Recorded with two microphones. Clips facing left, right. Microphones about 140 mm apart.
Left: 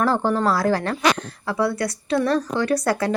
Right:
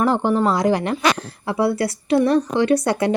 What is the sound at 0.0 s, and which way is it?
A woman's voice, 15° right (ahead or behind).